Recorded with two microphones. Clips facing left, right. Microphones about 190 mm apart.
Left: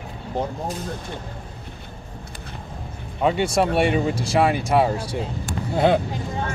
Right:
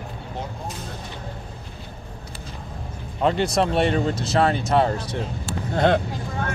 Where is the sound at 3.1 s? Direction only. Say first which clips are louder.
Left 1 dB; 5° left (ahead or behind).